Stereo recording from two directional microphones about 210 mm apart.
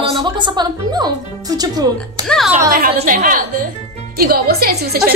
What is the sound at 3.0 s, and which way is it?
A woman's voice, 35° right (ahead or behind).